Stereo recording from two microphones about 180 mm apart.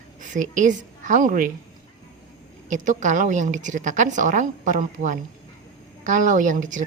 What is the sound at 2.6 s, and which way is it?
A woman's voice, 45° right (ahead or behind).